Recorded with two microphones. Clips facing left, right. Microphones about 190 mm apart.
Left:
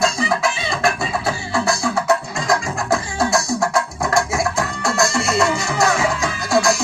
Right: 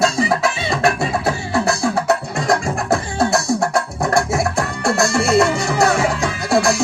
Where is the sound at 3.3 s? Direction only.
35° right (ahead or behind).